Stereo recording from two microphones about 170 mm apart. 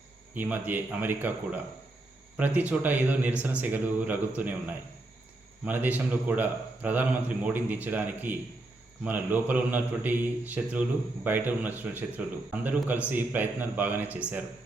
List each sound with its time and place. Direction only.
0.3 s speech: 10° right (ahead or behind)
5.6 s speech: 10° right (ahead or behind)